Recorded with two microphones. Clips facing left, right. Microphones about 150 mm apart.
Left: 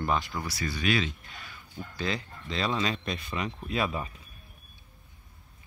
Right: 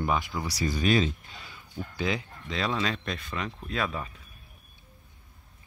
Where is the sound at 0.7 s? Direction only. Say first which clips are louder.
Right 4 dB; 40° right (ahead or behind).